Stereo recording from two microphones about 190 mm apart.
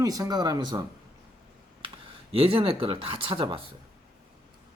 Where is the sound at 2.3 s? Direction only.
30° right (ahead or behind).